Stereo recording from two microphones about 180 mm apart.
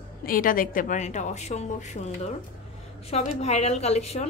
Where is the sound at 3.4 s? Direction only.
35° left (ahead or behind).